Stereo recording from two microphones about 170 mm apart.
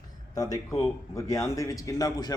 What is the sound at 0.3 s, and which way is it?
A man's voice, 20° left (ahead or behind).